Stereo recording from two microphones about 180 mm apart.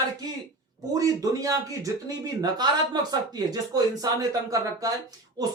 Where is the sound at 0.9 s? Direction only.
20° right (ahead or behind).